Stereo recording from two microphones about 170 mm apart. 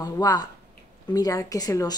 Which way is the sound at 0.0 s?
20° left (ahead or behind).